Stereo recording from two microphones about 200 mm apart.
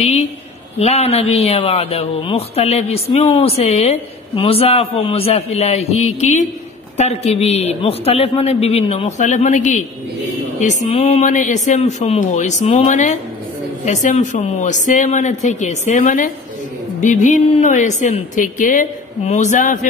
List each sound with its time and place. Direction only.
0.0 s a man's voice: 30° left (ahead or behind)